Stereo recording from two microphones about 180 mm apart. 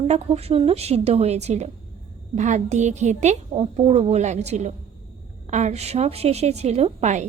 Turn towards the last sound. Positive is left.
turn(degrees=-40)  # may be behind; listen again after turning